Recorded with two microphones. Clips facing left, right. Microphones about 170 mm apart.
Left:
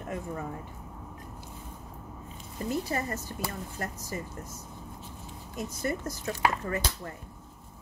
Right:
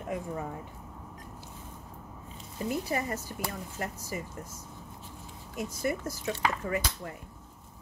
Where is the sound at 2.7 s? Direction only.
15° right (ahead or behind).